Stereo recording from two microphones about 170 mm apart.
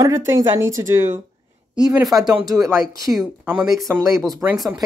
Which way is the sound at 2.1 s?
25° right (ahead or behind).